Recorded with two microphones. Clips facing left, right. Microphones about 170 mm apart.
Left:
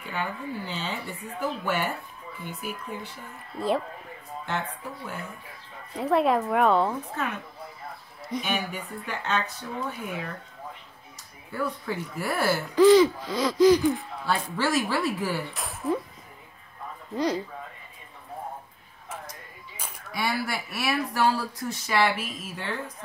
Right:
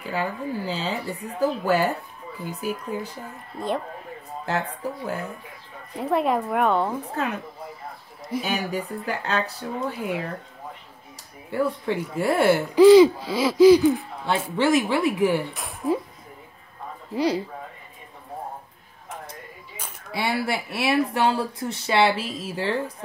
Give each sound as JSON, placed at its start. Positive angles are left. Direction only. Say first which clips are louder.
{"t": 0.0, "sound": "speech", "louder": "right 5 dB", "side_deg": -35}
{"t": 4.5, "sound": "speech", "louder": "right 5 dB", "side_deg": -40}
{"t": 5.9, "sound": "speech", "louder": "even", "side_deg": 0}
{"t": 8.5, "sound": "speech", "louder": "right 5 dB", "side_deg": -40}
{"t": 11.5, "sound": "speech", "louder": "right 6 dB", "side_deg": -30}
{"t": 12.7, "sound": "hoot", "louder": "right 5 dB", "side_deg": -10}
{"t": 14.2, "sound": "speech", "louder": "right 5 dB", "side_deg": -20}
{"t": 17.1, "sound": "hoot", "louder": "right 3 dB", "side_deg": -10}
{"t": 20.1, "sound": "speech", "louder": "right 4 dB", "side_deg": -25}